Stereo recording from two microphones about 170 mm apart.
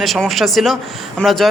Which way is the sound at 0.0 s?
Centre (ahead or behind).